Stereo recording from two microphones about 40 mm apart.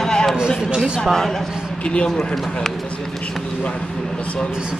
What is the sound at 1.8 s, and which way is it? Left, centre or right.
Speech, left.